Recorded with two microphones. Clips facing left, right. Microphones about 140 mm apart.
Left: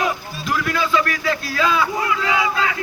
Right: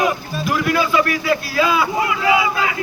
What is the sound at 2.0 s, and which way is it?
Speech, 20° right (ahead or behind).